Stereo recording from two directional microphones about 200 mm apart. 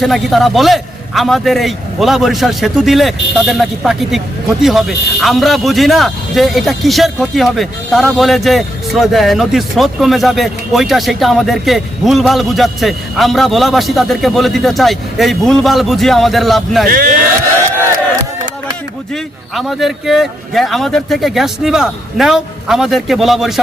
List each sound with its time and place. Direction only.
0.0 s a man's voice: centre (ahead or behind)
16.9 s speech: 45° right (ahead or behind)
19.1 s a man's voice: centre (ahead or behind)